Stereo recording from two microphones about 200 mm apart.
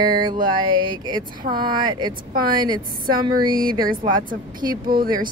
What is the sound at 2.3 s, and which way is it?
Speech, 45° right (ahead or behind).